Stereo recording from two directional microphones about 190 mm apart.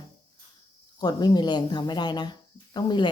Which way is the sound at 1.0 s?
20° left (ahead or behind).